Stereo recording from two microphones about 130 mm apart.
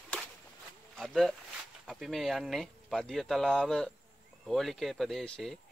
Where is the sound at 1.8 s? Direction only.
Centre (ahead or behind).